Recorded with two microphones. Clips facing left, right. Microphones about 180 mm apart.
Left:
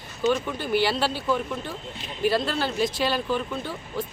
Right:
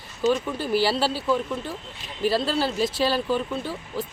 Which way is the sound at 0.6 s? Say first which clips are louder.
Even; 30° right (ahead or behind).